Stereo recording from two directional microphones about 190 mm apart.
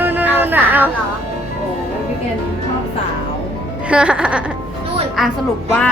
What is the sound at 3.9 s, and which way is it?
Music, 5° right (ahead or behind).